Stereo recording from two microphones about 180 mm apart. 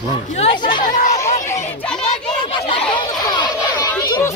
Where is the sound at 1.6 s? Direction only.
10° left (ahead or behind).